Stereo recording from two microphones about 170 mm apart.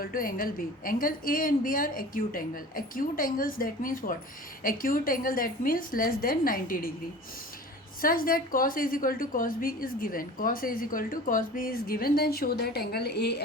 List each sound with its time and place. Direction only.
0.0 s a woman's voice: 55° left (ahead or behind)
8.0 s a woman's voice: 55° left (ahead or behind); by 13.4 s 75° left (ahead or behind)